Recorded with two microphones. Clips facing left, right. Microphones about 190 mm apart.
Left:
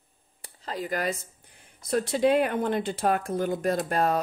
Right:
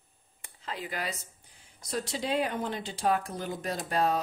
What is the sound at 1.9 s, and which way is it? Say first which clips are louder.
Speech: left 9 dB; 55° left (ahead or behind).